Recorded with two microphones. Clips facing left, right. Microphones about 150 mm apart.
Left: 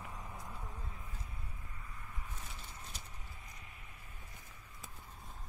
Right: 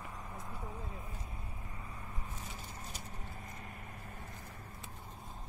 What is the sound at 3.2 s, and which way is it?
Vehicle, 50° right (ahead or behind).